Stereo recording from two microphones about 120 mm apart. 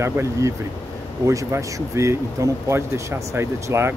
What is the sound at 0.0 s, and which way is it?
Speech, 20° right (ahead or behind).